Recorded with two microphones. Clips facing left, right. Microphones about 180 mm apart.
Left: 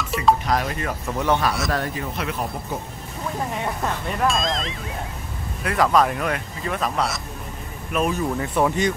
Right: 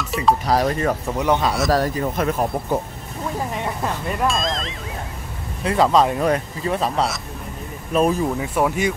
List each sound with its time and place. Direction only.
0.0 s music: centre (ahead or behind)
0.5 s speech: 35° right (ahead or behind)
1.0 s speech: 15° right (ahead or behind)
1.7 s speech: 40° right (ahead or behind)
3.6 s speech: centre (ahead or behind)
5.6 s speech: 25° right (ahead or behind)
7.9 s speech: 35° right (ahead or behind)
8.4 s speech: 5° right (ahead or behind)